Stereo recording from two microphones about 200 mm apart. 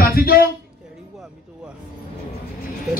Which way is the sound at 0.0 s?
50° left (ahead or behind).